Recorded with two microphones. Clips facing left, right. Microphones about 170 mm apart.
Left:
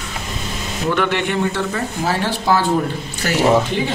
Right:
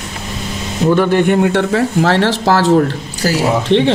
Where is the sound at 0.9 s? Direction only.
40° right (ahead or behind); by 2.8 s 90° right.